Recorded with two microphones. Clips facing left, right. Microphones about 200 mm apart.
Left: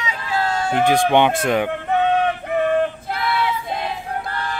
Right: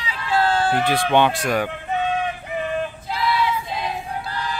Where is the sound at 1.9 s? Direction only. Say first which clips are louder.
Left 6 dB; 60° left (ahead or behind).